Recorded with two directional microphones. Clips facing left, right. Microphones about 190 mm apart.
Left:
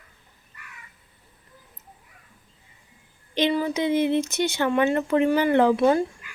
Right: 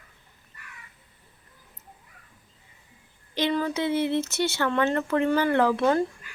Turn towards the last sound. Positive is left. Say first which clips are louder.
# left 3 dB
turn(degrees=15)  # may be behind; listen again after turning